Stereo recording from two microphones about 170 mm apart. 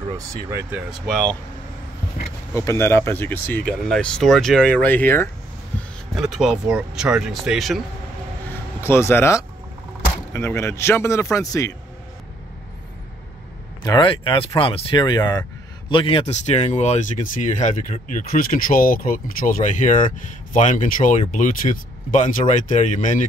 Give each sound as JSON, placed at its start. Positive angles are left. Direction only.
{"t": 0.1, "sound": "speech", "side_deg": -15}
{"t": 1.0, "sound": "speech", "side_deg": 5}
{"t": 2.5, "sound": "speech", "side_deg": 15}
{"t": 6.1, "sound": "speech", "side_deg": 0}
{"t": 8.8, "sound": "speech", "side_deg": 15}
{"t": 13.8, "sound": "speech", "side_deg": 25}